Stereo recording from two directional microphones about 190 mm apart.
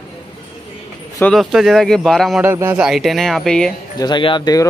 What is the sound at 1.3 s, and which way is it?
Speech, centre (ahead or behind).